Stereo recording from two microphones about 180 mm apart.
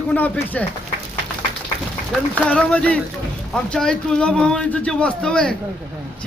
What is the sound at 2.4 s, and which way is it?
A man's voice, 5° left (ahead or behind).